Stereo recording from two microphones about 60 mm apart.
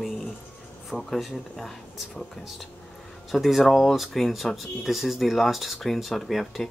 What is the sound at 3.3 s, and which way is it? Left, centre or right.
Speech, centre.